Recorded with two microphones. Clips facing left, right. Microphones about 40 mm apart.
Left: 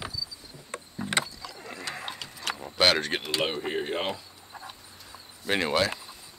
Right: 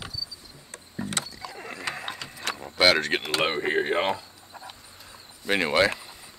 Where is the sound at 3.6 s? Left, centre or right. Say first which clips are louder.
Right 5 dB; right.